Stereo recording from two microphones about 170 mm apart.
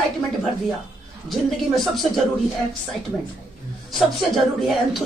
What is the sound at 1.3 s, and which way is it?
Speech, centre (ahead or behind).